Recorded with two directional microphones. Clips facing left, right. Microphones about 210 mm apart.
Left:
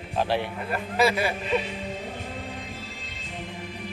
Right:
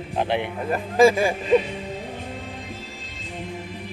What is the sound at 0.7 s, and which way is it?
Speech, 45° right (ahead or behind).